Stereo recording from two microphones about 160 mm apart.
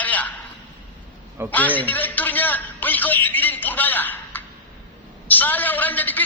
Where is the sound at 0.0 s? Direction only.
10° left (ahead or behind).